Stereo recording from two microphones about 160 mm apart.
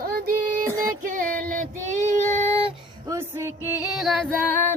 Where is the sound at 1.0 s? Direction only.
55° right (ahead or behind).